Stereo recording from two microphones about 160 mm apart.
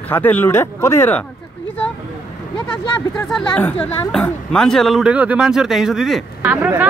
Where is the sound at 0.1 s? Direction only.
10° left (ahead or behind).